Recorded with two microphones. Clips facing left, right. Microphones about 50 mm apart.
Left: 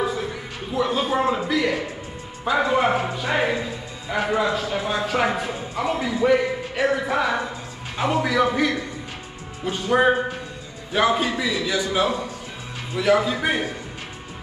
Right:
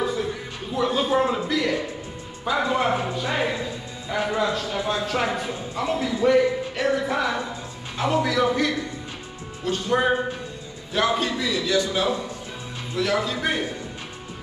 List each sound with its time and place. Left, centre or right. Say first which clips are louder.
0.7 s speech: even; centre